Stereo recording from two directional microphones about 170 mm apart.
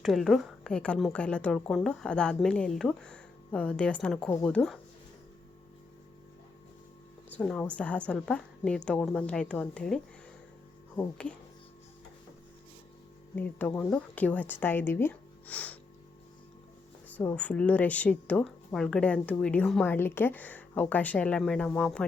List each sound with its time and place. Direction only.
0.0 s a woman's voice: centre (ahead or behind)
7.3 s speech: 5° left (ahead or behind)
13.3 s speech: 10° left (ahead or behind)
17.1 s speech: 10° left (ahead or behind)